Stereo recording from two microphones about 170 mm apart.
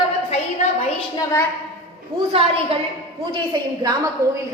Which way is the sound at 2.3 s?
35° right (ahead or behind).